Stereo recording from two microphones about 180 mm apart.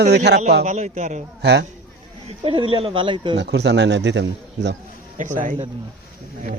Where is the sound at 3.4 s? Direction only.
70° right (ahead or behind).